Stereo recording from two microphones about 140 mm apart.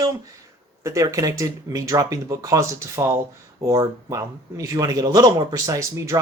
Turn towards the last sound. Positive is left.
turn(degrees=-20)  # may be behind; listen again after turning